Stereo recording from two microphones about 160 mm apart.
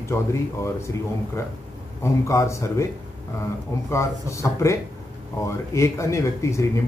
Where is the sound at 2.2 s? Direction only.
20° left (ahead or behind).